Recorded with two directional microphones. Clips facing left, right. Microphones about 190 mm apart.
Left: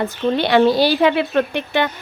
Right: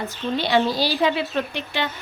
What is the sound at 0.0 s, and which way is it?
Speech, 60° left (ahead or behind).